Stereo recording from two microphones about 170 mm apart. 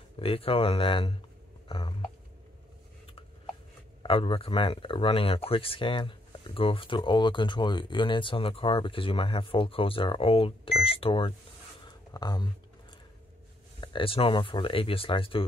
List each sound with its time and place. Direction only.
0.2 s speech: 35° left (ahead or behind)
4.0 s speech: 30° left (ahead or behind)
11.8 s a sound: 25° left (ahead or behind)
13.7 s speech: 30° left (ahead or behind)